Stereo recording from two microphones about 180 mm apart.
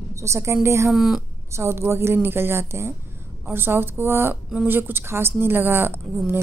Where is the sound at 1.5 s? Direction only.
15° right (ahead or behind).